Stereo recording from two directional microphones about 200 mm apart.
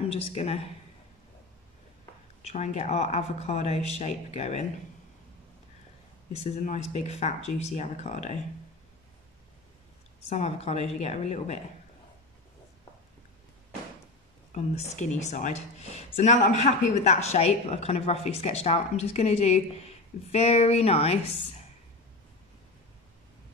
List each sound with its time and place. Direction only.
0.1 s a woman's voice: 30° left (ahead or behind)
2.5 s a woman's voice: 35° left (ahead or behind)
6.4 s a woman's voice: 35° left (ahead or behind)
10.3 s a woman's voice: 35° left (ahead or behind)
14.5 s a woman's voice: 35° left (ahead or behind)